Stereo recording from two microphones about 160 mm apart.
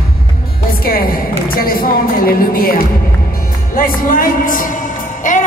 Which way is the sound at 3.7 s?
60° left (ahead or behind).